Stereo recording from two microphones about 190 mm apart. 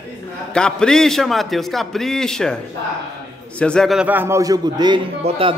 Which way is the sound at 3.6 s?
5° left (ahead or behind).